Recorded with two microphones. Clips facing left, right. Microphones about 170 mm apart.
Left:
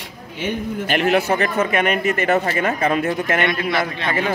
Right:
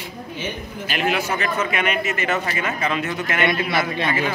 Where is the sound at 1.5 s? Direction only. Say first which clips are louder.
Left 4 dB; 45° left (ahead or behind).